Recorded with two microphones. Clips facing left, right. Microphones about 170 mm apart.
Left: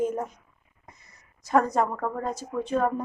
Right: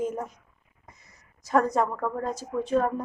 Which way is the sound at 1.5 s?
Centre (ahead or behind).